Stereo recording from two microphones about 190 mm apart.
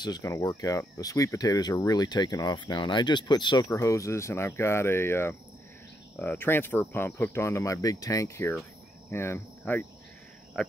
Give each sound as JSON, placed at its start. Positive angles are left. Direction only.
{"t": 0.0, "sound": "speech", "side_deg": 20}
{"t": 9.1, "sound": "cricket", "side_deg": 15}